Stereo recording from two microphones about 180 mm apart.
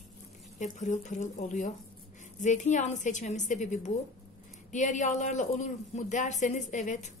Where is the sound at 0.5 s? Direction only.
40° left (ahead or behind).